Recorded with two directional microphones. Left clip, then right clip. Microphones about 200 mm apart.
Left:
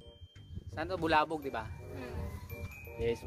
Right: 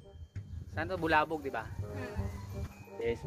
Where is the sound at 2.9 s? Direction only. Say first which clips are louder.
Even; 20° left (ahead or behind).